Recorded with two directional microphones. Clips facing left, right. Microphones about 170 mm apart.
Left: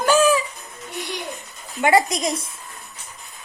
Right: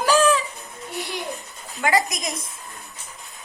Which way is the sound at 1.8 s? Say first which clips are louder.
Left 4 dB; 30° left (ahead or behind).